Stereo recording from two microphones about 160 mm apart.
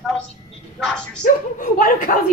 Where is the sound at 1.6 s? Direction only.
60° left (ahead or behind).